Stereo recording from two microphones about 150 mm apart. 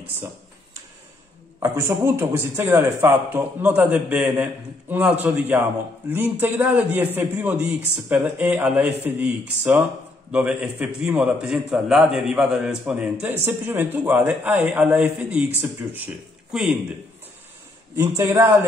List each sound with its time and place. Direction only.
1.6 s a man's voice: 15° right (ahead or behind)
10.3 s a man's voice: 5° right (ahead or behind)
17.9 s a man's voice: 20° right (ahead or behind)